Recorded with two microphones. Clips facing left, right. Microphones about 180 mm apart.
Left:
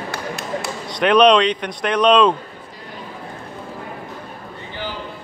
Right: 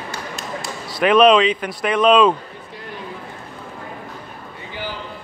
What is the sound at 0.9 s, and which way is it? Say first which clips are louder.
Speech: even; 5° right (ahead or behind).